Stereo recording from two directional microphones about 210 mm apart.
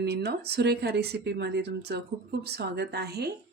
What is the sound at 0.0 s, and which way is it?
Speech, 50° right (ahead or behind).